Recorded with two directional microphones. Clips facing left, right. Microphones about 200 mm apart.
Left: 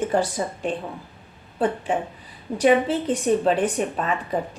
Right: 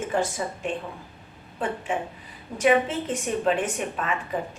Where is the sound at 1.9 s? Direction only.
35° left (ahead or behind).